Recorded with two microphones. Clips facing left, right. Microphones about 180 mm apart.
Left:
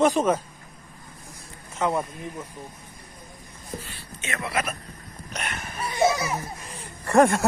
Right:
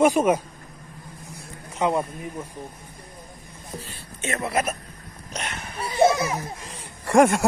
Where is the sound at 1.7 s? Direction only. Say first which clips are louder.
Right 2 dB; 15° right (ahead or behind).